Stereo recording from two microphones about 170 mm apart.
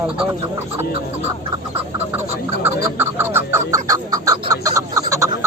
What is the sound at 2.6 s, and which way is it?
Chicken, 10° right (ahead or behind).